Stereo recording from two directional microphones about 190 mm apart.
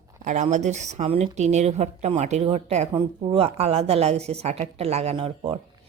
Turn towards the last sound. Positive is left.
turn(degrees=-30)  # may be behind; listen again after turning